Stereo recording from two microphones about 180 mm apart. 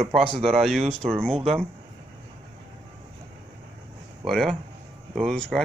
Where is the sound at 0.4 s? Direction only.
Centre (ahead or behind).